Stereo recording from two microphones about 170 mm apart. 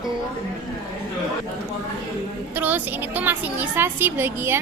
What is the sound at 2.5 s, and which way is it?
A woman's voice, 10° right (ahead or behind).